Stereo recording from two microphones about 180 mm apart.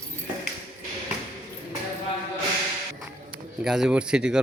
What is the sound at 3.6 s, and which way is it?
Speech, 5° right (ahead or behind).